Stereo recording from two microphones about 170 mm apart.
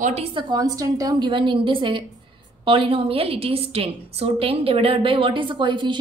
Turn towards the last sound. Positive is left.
turn(degrees=-25)  # may be behind; listen again after turning